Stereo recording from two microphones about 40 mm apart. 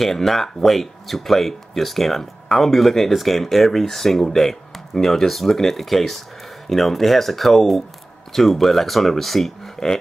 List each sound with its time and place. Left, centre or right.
0.0 s speech: centre
9.8 s speech: centre